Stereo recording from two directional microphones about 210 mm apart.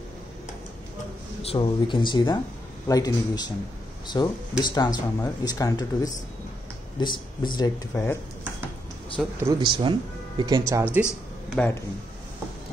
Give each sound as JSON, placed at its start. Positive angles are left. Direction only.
{"t": 1.4, "sound": "speech", "side_deg": 25}
{"t": 7.0, "sound": "speech", "side_deg": 20}
{"t": 9.4, "sound": "speech", "side_deg": -20}
{"t": 10.7, "sound": "speech", "side_deg": -10}
{"t": 11.1, "sound": "a sound", "side_deg": 10}